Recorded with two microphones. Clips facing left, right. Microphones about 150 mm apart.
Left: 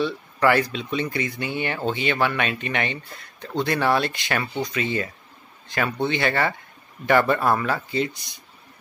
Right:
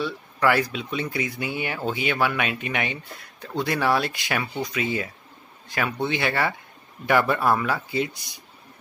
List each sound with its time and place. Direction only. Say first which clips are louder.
0.0 s speech: left 2 dB; 5° right (ahead or behind)